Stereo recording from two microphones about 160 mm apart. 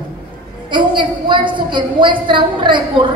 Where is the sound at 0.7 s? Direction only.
30° right (ahead or behind).